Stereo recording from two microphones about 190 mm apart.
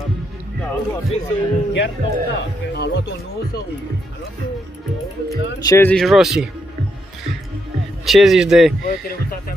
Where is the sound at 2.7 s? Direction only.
60° left (ahead or behind).